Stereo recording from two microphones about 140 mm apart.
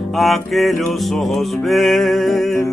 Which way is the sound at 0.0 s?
Centre (ahead or behind).